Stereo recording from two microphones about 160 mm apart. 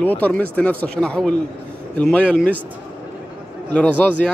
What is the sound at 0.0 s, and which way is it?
Speech, 10° left (ahead or behind).